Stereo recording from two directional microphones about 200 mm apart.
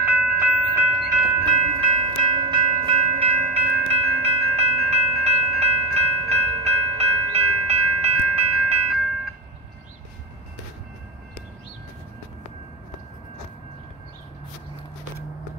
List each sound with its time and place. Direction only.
0.0 s train: 10° right (ahead or behind)
1.4 s train: 25° right (ahead or behind)